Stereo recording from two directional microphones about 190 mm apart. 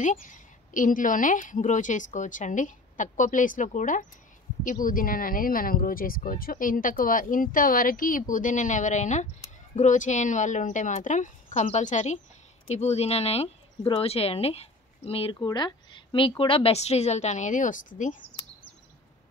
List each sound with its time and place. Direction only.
0.0 s speech: 45° left (ahead or behind)